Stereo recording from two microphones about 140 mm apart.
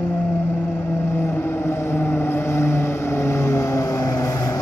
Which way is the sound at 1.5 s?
20° left (ahead or behind).